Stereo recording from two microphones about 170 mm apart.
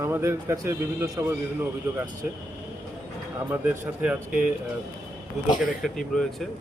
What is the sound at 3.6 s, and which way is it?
Speech, 10° right (ahead or behind).